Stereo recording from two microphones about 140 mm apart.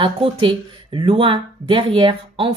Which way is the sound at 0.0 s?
40° right (ahead or behind).